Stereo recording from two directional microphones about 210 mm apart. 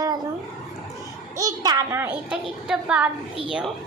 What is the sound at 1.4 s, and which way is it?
A child's voice, 20° right (ahead or behind).